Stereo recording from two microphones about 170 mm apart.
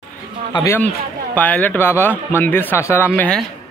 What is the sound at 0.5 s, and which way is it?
Speech, 25° left (ahead or behind).